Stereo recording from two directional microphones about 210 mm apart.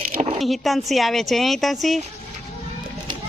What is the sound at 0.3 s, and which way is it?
Speech, centre (ahead or behind).